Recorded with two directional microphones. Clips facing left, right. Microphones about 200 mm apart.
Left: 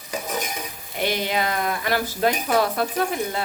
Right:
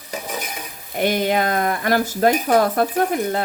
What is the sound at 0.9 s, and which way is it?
Speech, 50° right (ahead or behind).